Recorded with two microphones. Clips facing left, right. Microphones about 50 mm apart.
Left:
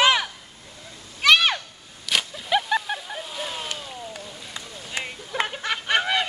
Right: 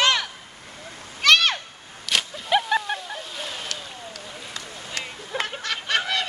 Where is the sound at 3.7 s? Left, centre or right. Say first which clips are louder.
Left 1 dB; centre.